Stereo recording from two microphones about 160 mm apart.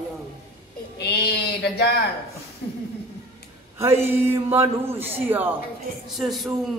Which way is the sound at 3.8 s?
15° right (ahead or behind).